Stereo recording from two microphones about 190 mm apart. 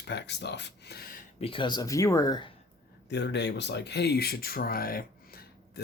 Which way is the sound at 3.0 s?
65° left (ahead or behind).